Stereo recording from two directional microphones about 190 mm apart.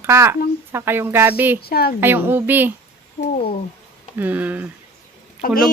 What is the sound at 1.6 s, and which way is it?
Speech, 55° left (ahead or behind).